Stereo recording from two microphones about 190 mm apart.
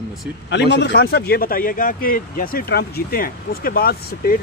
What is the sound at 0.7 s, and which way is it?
Speech, 60° left (ahead or behind).